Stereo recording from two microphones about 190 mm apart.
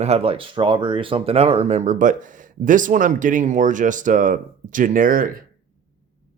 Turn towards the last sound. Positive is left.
turn(degrees=-50)  # may be behind; listen again after turning